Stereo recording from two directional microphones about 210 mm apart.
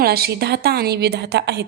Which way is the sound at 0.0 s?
50° right (ahead or behind).